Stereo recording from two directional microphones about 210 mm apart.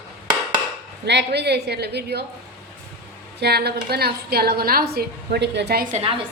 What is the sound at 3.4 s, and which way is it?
A woman's voice, 50° right (ahead or behind).